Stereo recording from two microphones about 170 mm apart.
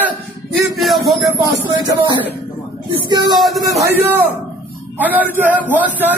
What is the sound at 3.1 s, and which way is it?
Speech, 25° right (ahead or behind).